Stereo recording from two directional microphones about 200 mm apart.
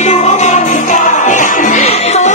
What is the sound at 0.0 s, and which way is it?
Music, 35° left (ahead or behind).